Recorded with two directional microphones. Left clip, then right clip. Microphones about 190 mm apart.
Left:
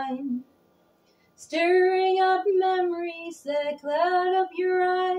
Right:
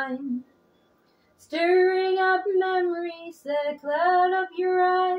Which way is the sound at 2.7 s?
25° right (ahead or behind).